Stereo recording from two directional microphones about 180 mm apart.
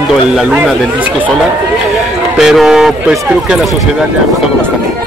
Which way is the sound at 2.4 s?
Centre (ahead or behind).